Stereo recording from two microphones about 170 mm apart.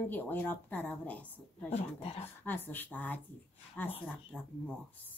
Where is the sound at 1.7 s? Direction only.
35° left (ahead or behind).